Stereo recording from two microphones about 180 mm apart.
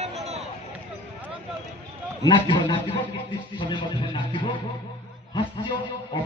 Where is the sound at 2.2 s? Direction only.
25° left (ahead or behind).